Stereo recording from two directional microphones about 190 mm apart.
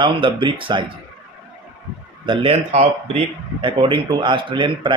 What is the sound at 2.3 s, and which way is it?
Speech, 30° right (ahead or behind).